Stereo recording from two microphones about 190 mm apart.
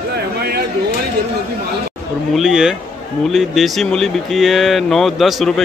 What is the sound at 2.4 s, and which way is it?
A man's voice, centre (ahead or behind).